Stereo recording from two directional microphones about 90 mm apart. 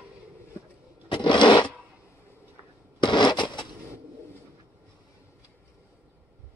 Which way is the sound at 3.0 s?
60° left (ahead or behind).